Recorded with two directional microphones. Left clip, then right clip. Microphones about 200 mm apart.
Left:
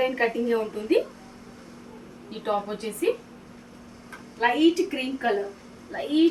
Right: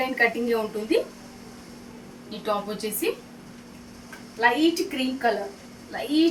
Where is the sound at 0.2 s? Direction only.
20° right (ahead or behind).